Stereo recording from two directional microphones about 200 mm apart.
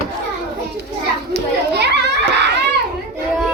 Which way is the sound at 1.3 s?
55° right (ahead or behind).